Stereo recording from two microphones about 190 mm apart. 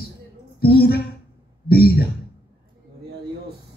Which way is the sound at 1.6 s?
55° left (ahead or behind).